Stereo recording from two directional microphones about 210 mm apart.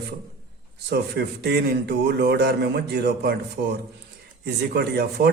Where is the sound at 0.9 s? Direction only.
50° right (ahead or behind).